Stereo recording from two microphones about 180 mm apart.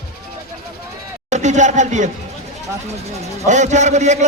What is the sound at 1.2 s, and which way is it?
A man's voice, 40° right (ahead or behind).